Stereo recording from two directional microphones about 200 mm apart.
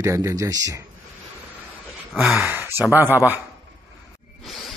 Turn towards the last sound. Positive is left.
turn(degrees=0)  # may be behind; listen again after turning